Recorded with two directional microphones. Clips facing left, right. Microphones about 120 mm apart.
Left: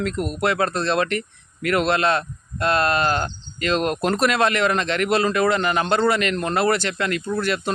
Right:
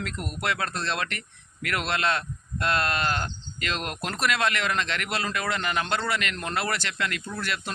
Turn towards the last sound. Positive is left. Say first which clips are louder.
# left 9 dB
turn(degrees=35)  # may be behind; listen again after turning